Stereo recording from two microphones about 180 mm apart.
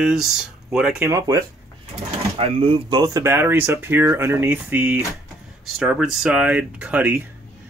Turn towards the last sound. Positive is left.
turn(degrees=-10)  # may be behind; listen again after turning